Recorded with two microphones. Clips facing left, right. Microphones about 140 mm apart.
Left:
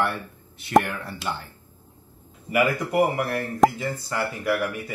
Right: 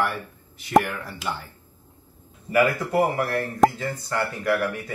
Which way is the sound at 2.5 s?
15° left (ahead or behind).